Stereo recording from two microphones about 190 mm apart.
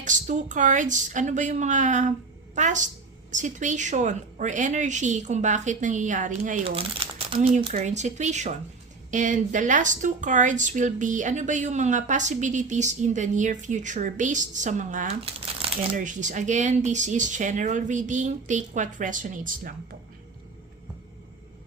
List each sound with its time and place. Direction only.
0.0 s speech: 40° right (ahead or behind)
6.7 s speech: 30° right (ahead or behind)
15.2 s crumpling: 30° right (ahead or behind)
16.0 s speech: 40° right (ahead or behind)